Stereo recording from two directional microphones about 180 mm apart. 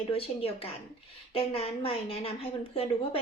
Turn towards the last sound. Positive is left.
turn(degrees=35)  # may be behind; listen again after turning